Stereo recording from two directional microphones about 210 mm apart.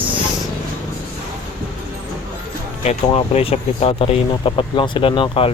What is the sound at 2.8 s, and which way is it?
Speech, 30° left (ahead or behind).